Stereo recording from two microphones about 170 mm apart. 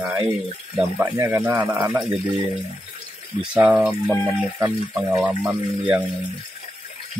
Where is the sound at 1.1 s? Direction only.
10° right (ahead or behind).